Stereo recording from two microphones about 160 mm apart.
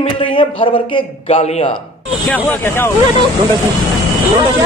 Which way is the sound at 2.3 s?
10° left (ahead or behind).